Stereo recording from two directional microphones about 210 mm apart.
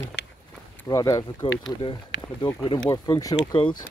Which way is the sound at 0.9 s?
15° left (ahead or behind).